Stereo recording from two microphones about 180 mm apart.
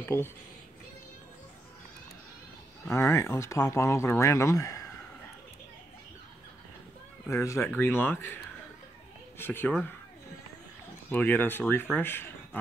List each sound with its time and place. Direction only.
0.0 s speech: 10° left (ahead or behind)
2.9 s speech: 15° left (ahead or behind)
7.2 s speech: 15° left (ahead or behind)
9.4 s speech: 10° left (ahead or behind)
11.1 s speech: 10° left (ahead or behind)